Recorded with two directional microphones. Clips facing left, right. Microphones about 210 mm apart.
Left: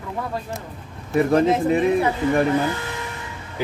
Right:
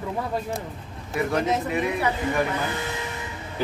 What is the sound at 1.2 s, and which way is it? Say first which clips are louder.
Speech: left 7 dB; 35° left (ahead or behind).